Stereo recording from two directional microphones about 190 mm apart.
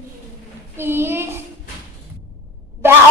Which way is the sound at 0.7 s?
10° right (ahead or behind).